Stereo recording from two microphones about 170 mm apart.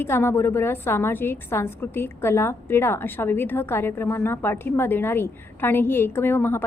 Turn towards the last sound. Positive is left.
turn(degrees=15)  # may be behind; listen again after turning